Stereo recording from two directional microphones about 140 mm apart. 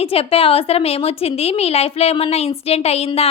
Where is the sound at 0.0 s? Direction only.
45° left (ahead or behind).